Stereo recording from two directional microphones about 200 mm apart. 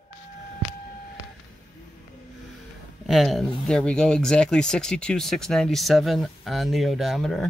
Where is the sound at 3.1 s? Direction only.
Centre (ahead or behind).